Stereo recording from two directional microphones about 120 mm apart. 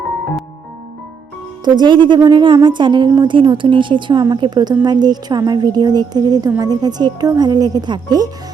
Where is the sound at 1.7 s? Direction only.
40° right (ahead or behind).